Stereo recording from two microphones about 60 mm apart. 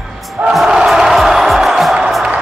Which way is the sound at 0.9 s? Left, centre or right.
Centre.